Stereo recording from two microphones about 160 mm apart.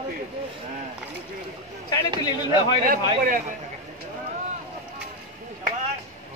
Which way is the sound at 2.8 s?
60° right (ahead or behind).